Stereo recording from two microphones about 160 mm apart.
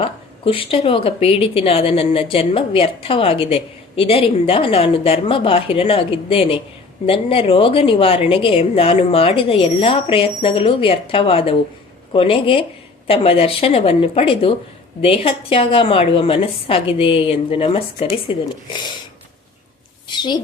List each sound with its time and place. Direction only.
0.0 s a woman's voice: 35° left (ahead or behind)
20.1 s a woman's voice: 30° left (ahead or behind)